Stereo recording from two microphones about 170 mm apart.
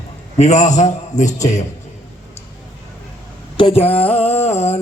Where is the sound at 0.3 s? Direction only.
45° left (ahead or behind).